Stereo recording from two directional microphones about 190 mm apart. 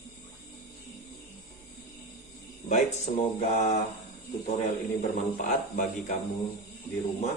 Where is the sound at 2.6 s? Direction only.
35° left (ahead or behind).